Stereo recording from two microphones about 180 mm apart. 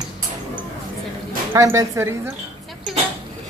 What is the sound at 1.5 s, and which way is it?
Speech, 15° right (ahead or behind).